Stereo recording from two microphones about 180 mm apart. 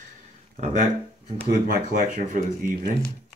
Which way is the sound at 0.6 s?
45° right (ahead or behind).